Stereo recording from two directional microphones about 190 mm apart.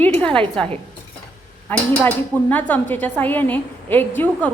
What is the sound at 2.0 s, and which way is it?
A woman's voice, 10° left (ahead or behind).